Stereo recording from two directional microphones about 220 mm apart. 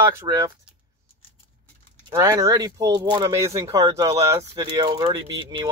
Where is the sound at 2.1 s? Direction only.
15° right (ahead or behind).